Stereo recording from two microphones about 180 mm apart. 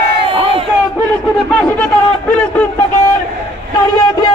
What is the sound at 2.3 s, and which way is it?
Speech, 5° left (ahead or behind).